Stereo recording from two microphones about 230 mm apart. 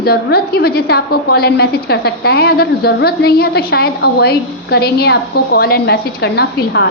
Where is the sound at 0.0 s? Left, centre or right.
Left.